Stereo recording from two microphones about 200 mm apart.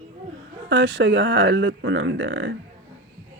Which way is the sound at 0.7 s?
60° right (ahead or behind).